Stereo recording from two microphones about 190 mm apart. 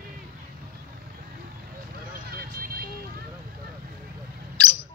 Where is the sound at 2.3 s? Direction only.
50° right (ahead or behind).